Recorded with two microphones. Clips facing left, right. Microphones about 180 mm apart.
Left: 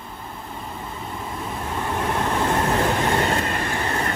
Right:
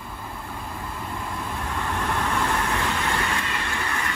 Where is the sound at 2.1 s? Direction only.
25° left (ahead or behind).